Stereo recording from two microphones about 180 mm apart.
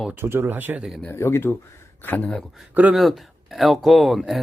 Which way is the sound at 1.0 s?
15° left (ahead or behind).